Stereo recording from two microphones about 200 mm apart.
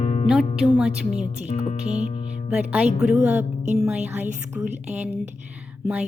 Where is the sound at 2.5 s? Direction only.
5° right (ahead or behind).